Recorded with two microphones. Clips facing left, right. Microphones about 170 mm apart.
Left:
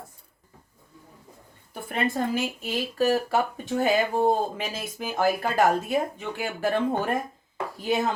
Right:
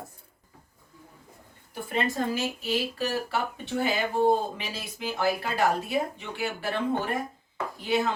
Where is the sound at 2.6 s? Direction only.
45° left (ahead or behind).